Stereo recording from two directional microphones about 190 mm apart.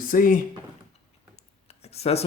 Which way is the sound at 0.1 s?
45° left (ahead or behind).